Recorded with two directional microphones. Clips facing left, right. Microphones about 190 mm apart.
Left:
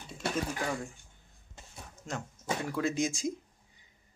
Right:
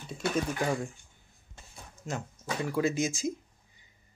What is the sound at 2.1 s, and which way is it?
Speech, 5° right (ahead or behind).